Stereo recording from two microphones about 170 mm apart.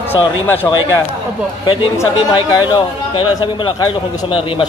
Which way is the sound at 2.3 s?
25° left (ahead or behind).